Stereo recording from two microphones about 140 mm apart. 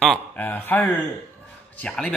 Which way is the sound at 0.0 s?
10° left (ahead or behind).